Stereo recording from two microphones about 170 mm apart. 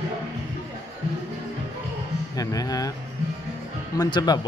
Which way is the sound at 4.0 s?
25° left (ahead or behind).